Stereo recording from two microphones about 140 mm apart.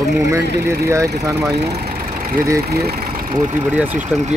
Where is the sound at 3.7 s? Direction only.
10° right (ahead or behind).